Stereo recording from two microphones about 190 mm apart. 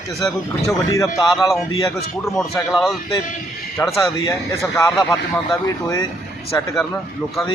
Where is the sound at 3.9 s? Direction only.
15° left (ahead or behind).